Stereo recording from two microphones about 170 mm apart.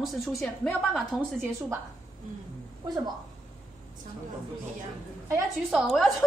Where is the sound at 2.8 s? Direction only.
25° right (ahead or behind).